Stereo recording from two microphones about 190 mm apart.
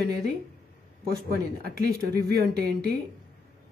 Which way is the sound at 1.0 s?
55° right (ahead or behind).